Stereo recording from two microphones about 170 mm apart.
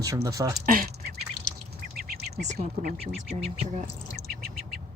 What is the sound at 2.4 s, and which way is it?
Speech, 40° right (ahead or behind).